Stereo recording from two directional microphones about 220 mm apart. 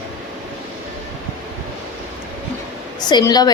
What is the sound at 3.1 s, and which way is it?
Speech, 20° left (ahead or behind).